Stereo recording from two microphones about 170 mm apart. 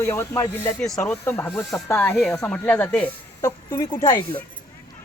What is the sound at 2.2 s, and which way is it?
Speech, 5° left (ahead or behind).